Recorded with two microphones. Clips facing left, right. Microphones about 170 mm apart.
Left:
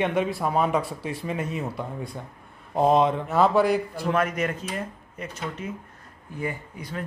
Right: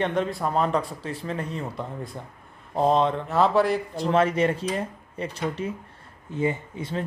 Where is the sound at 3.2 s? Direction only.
Centre (ahead or behind).